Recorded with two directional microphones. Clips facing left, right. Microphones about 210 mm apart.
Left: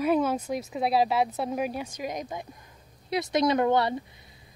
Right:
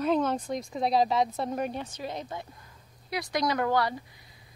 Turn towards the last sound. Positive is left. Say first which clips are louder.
# left 4 dB
turn(degrees=25)  # may be behind; listen again after turning